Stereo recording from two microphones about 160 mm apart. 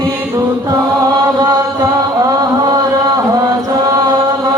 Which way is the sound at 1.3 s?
25° right (ahead or behind).